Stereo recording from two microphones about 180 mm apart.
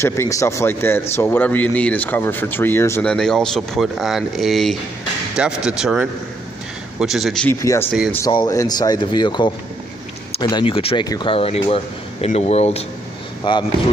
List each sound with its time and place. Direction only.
0.0 s a man's voice: 15° left (ahead or behind); by 7.4 s centre (ahead or behind)
7.4 s a man's voice: 15° left (ahead or behind); by 12.8 s 35° left (ahead or behind)
13.4 s speech: 25° left (ahead or behind)